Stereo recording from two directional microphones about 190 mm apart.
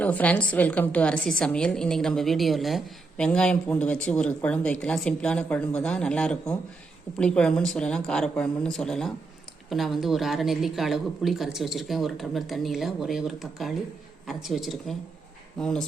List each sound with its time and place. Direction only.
0.0 s a woman's voice: 10° left (ahead or behind)